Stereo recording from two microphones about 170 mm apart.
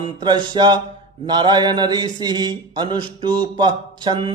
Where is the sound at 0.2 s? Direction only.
25° right (ahead or behind).